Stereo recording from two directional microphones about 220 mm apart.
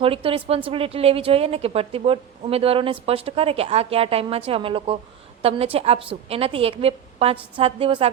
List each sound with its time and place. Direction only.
0.0 s speech: 25° right (ahead or behind)